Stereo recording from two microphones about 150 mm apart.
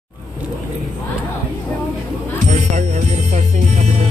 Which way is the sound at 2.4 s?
55° right (ahead or behind).